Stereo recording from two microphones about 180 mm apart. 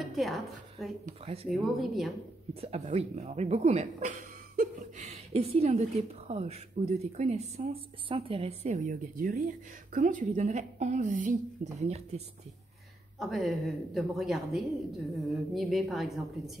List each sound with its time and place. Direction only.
0.0 s a woman's voice: centre (ahead or behind)
1.0 s speech: 35° right (ahead or behind)
1.5 s speech: centre (ahead or behind)
2.6 s a woman's voice: 35° right (ahead or behind)
13.2 s speech: centre (ahead or behind)